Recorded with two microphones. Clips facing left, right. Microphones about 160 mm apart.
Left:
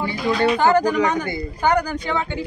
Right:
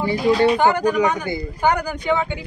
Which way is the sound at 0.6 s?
15° right (ahead or behind).